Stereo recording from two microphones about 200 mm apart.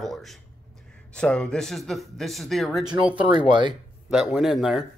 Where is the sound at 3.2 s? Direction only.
25° right (ahead or behind).